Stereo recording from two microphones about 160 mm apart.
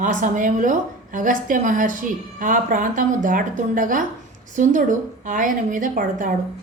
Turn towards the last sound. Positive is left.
turn(degrees=-55)  # may be behind; listen again after turning